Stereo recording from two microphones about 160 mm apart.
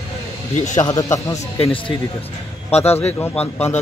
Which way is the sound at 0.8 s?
25° left (ahead or behind).